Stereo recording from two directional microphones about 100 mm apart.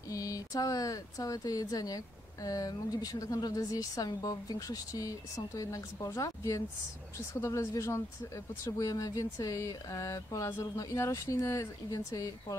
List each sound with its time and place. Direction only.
0.1 s speech: 35° left (ahead or behind)